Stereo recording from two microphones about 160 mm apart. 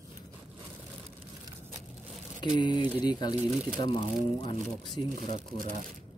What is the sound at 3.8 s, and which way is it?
Speech, 35° left (ahead or behind).